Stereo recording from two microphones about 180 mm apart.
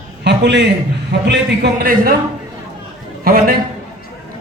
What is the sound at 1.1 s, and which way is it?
A man's voice, 70° right (ahead or behind).